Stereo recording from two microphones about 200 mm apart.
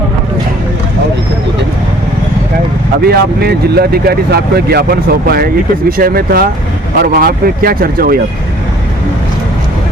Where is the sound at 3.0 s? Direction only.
55° right (ahead or behind).